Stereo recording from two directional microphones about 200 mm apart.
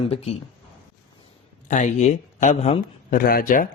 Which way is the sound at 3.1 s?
45° left (ahead or behind).